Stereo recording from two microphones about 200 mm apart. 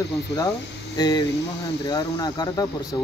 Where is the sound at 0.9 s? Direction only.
20° left (ahead or behind).